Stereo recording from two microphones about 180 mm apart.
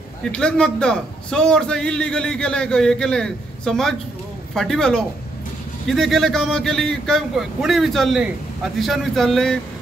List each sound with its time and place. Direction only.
0.2 s a man's voice: 5° left (ahead or behind)